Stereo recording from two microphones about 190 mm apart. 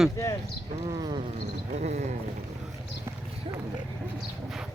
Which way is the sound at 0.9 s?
20° right (ahead or behind).